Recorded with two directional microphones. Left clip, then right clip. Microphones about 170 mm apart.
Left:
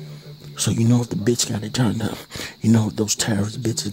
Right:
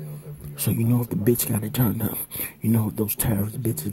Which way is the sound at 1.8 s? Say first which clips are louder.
Left 3 dB; 20° left (ahead or behind).